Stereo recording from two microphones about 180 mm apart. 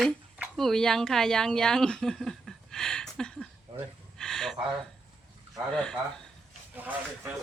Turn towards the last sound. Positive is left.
turn(degrees=-10)  # may be behind; listen again after turning